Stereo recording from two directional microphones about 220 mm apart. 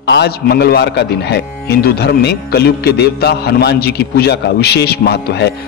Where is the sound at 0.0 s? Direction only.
50° left (ahead or behind).